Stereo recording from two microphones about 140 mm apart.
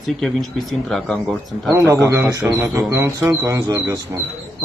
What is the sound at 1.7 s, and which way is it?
A man's voice, 20° right (ahead or behind).